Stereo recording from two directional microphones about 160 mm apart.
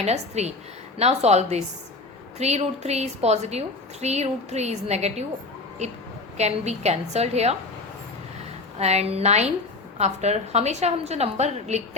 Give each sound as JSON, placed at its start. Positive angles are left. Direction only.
{"t": 0.0, "sound": "a woman's voice", "side_deg": -45}
{"t": 8.8, "sound": "a woman's voice", "side_deg": -40}